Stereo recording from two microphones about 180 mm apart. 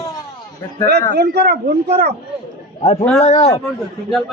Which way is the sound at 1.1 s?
65° right (ahead or behind).